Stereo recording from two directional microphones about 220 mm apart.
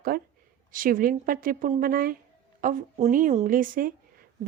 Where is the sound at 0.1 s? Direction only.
45° right (ahead or behind).